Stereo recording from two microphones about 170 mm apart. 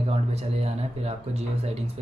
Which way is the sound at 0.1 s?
35° right (ahead or behind).